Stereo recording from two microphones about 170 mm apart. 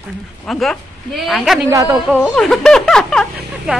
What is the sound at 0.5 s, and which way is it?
Speech, centre (ahead or behind).